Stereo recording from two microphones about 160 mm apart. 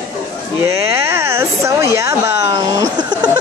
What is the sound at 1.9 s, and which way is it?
Speech, 20° right (ahead or behind).